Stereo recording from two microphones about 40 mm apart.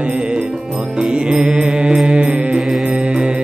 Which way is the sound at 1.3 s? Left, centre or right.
Right.